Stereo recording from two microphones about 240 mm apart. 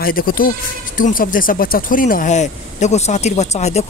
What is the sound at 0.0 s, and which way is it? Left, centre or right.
Speech, left.